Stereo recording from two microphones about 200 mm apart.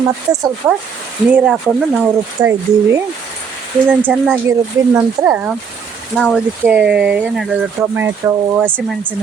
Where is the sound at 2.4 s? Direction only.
20° right (ahead or behind).